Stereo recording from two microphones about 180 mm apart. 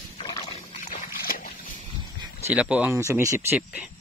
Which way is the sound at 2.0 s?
25° right (ahead or behind).